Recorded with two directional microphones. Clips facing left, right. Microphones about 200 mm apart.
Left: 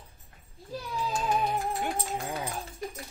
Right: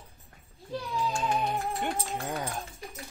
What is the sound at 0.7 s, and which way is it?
Music, 5° left (ahead or behind).